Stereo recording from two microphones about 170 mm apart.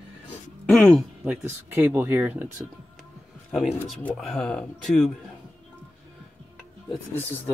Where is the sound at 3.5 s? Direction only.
5° right (ahead or behind).